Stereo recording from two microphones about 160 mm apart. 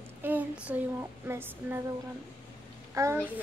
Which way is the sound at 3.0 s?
20° right (ahead or behind).